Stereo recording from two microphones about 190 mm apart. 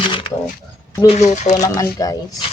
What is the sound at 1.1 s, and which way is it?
Speech, 40° left (ahead or behind).